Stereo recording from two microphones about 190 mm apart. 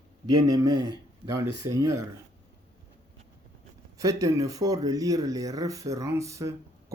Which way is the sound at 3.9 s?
15° right (ahead or behind).